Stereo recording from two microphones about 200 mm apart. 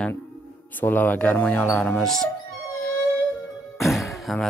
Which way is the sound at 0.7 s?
10° left (ahead or behind).